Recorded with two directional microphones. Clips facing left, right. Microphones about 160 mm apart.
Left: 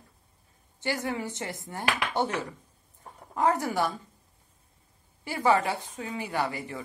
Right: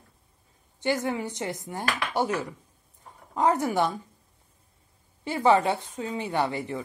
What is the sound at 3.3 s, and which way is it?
Speech, 20° right (ahead or behind).